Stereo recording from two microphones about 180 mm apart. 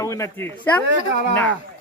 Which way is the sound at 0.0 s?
15° left (ahead or behind).